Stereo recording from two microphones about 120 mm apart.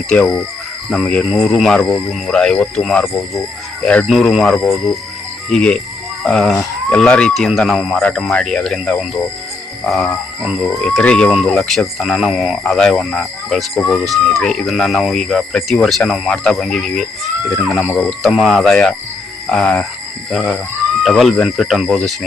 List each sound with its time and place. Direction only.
0.1 s speech: 5° left (ahead or behind)
4.1 s speech: centre (ahead or behind)
10.4 s a sound: 5° right (ahead or behind)
10.8 s speech: 5° left (ahead or behind)
13.7 s speech: 15° left (ahead or behind)
14.0 s speech: centre (ahead or behind)